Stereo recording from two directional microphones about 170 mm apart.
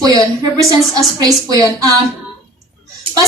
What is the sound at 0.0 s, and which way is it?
A woman's voice, 20° right (ahead or behind).